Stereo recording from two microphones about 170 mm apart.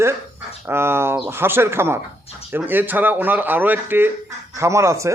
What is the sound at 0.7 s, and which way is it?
Speech, 15° right (ahead or behind).